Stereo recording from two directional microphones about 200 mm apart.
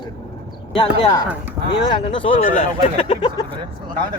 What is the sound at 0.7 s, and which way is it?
Speech, 25° left (ahead or behind).